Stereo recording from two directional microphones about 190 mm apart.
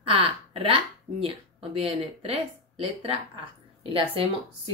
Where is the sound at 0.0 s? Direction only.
30° right (ahead or behind).